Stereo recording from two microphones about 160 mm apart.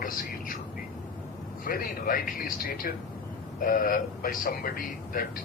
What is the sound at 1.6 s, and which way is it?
Speech, 65° left (ahead or behind).